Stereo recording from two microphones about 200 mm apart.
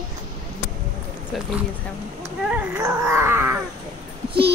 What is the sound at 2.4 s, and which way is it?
Dog, 15° right (ahead or behind).